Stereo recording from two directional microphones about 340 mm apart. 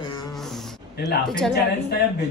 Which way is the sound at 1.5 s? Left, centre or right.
Left.